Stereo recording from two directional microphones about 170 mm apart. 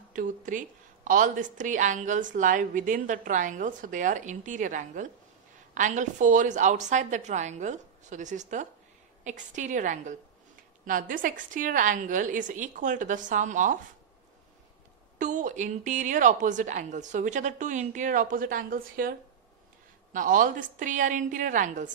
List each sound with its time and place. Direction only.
0.1 s a woman's voice: 50° right (ahead or behind)
15.1 s a woman's voice: 45° right (ahead or behind)